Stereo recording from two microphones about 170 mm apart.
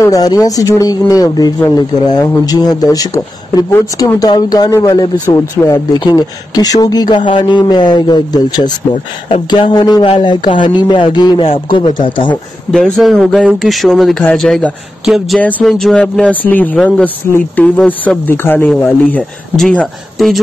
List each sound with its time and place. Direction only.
0.0 s speech: 20° left (ahead or behind)
12.7 s a man's voice: centre (ahead or behind)